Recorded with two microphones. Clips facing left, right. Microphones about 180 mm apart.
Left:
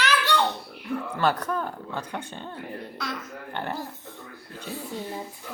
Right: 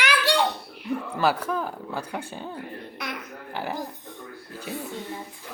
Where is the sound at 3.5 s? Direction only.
5° right (ahead or behind).